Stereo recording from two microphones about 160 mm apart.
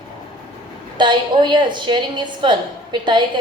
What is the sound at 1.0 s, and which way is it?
A woman's voice, 30° right (ahead or behind).